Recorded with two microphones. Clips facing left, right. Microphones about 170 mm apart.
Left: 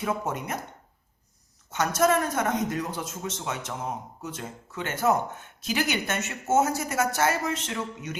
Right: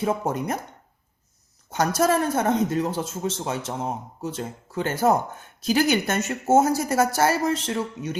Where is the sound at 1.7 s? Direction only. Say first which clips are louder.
Right 2 dB; 35° right (ahead or behind).